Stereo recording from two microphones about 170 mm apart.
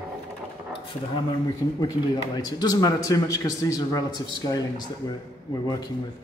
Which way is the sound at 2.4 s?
25° left (ahead or behind).